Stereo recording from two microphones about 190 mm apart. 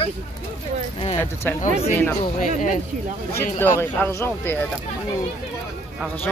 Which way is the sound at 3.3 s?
10° left (ahead or behind).